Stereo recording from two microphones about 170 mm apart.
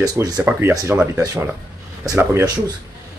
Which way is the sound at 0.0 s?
20° right (ahead or behind).